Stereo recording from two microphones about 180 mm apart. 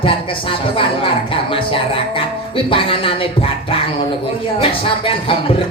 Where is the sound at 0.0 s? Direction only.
30° left (ahead or behind).